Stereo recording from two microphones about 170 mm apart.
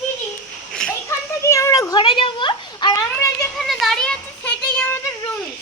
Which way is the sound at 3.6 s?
Centre (ahead or behind).